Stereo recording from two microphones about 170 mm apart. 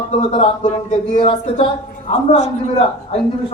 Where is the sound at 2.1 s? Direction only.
40° left (ahead or behind).